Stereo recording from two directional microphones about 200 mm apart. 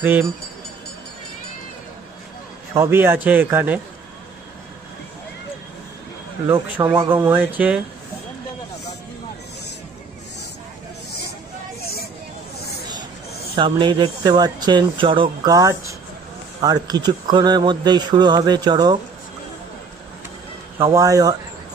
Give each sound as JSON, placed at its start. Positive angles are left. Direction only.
{"t": 0.0, "sound": "speech", "side_deg": -10}
{"t": 2.7, "sound": "speech", "side_deg": -15}
{"t": 6.4, "sound": "speech", "side_deg": -15}
{"t": 13.6, "sound": "speech", "side_deg": -25}
{"t": 20.7, "sound": "speech", "side_deg": -15}